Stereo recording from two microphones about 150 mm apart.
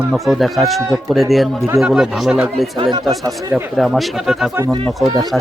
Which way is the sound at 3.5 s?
Centre (ahead or behind).